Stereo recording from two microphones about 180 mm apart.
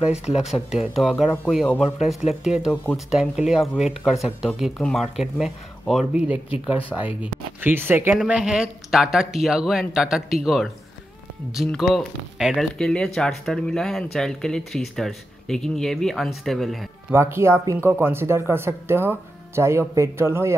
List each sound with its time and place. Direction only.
0.1 s speech: 35° left (ahead or behind)
0.4 s speech: centre (ahead or behind)
1.1 s speech: 15° left (ahead or behind)
1.5 s speech: centre (ahead or behind)
17.1 s speech: 15° right (ahead or behind)